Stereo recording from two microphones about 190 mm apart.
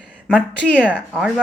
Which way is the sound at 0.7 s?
5° right (ahead or behind).